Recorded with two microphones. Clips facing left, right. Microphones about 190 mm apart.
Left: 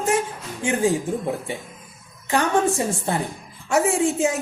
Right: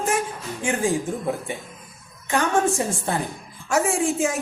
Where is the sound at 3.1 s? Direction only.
25° left (ahead or behind).